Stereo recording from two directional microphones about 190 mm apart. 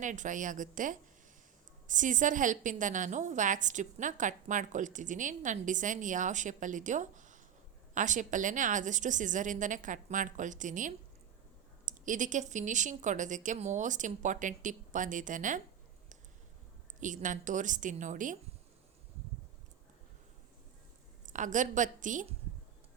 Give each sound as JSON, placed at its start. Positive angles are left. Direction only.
{"t": 0.0, "sound": "a woman's voice", "side_deg": -40}
{"t": 17.0, "sound": "a woman's voice", "side_deg": -40}
{"t": 21.2, "sound": "a woman's voice", "side_deg": -40}